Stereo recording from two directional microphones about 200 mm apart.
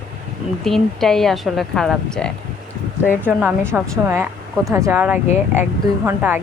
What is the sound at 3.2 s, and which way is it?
A woman's voice, 10° right (ahead or behind).